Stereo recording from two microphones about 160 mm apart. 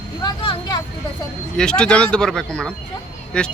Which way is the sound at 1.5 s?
5° left (ahead or behind).